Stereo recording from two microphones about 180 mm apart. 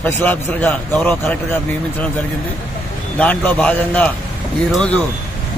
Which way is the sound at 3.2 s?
10° left (ahead or behind).